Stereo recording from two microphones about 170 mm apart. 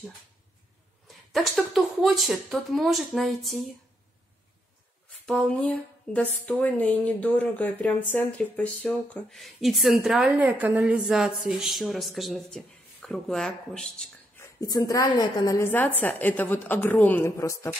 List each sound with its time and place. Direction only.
1.0 s speech: centre (ahead or behind)
5.2 s a sound: 5° left (ahead or behind)
6.4 s speech: 10° left (ahead or behind)
14.4 s a woman's voice: 20° left (ahead or behind)